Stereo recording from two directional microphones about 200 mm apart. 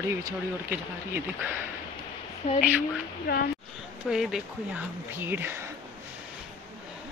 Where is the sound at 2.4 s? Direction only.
35° left (ahead or behind).